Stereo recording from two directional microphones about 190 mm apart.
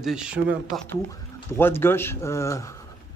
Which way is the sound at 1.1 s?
10° left (ahead or behind).